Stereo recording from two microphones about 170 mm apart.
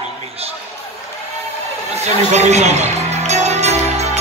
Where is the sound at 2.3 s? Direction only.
40° right (ahead or behind).